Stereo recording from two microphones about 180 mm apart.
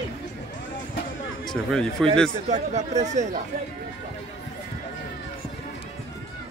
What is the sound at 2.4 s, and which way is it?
Speech, 40° right (ahead or behind).